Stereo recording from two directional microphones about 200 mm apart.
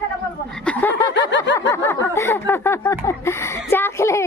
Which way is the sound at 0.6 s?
10° left (ahead or behind).